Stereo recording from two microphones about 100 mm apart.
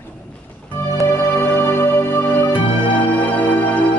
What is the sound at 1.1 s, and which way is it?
Music, 25° left (ahead or behind).